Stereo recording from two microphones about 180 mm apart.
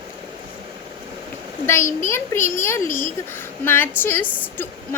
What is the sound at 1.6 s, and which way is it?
A woman's voice, 15° left (ahead or behind).